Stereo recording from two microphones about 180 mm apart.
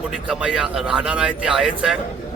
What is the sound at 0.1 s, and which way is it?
A man's voice, 5° right (ahead or behind).